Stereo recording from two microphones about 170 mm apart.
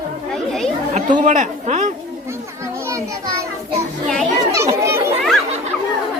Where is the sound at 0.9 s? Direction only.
45° right (ahead or behind).